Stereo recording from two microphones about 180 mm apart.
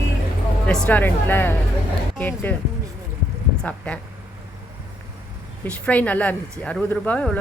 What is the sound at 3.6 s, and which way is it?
Speech, 5° left (ahead or behind).